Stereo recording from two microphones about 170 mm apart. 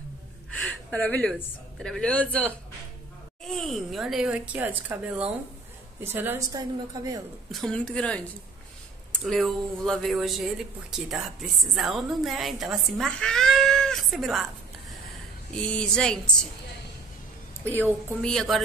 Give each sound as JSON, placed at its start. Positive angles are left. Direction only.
{"t": 0.5, "sound": "a sound", "side_deg": 10}
{"t": 1.4, "sound": "a woman's voice", "side_deg": 5}
{"t": 7.5, "sound": "speech", "side_deg": 5}
{"t": 15.5, "sound": "speech", "side_deg": 5}
{"t": 18.2, "sound": "speech", "side_deg": 5}